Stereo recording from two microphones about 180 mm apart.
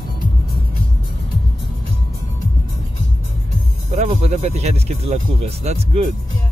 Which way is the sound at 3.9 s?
35° right (ahead or behind).